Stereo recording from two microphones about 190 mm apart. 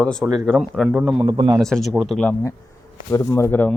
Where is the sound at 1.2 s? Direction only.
20° right (ahead or behind).